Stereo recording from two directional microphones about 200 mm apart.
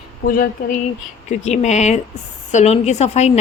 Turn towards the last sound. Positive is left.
turn(degrees=35)  # may be behind; listen again after turning